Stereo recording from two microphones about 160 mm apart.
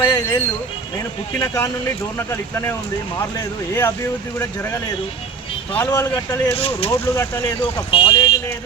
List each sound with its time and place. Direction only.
0.0 s speech: 20° left (ahead or behind)
5.7 s speech: 15° left (ahead or behind)
6.6 s speech: 35° left (ahead or behind)